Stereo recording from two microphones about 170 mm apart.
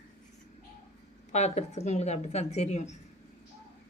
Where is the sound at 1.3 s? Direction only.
40° left (ahead or behind).